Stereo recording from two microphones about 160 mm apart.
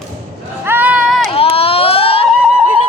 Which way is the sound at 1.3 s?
35° left (ahead or behind).